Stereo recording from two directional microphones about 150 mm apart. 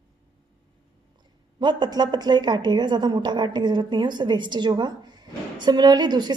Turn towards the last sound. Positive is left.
turn(degrees=-30)  # may be behind; listen again after turning